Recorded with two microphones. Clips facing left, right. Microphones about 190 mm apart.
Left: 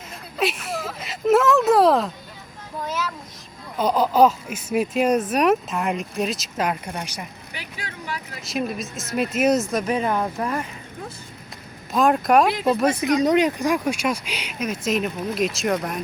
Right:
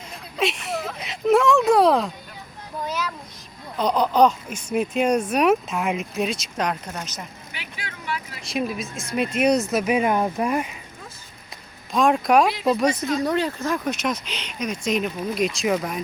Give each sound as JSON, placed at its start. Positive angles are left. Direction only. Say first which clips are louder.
{"t": 0.1, "sound": "speech", "louder": "even", "side_deg": 0}
{"t": 7.5, "sound": "vehicle", "louder": "left 2 dB", "side_deg": 40}
{"t": 8.4, "sound": "speech", "louder": "left 1 dB", "side_deg": 0}
{"t": 11.9, "sound": "speech", "louder": "even", "side_deg": 5}
{"t": 13.0, "sound": "speech", "louder": "left 4 dB", "side_deg": 15}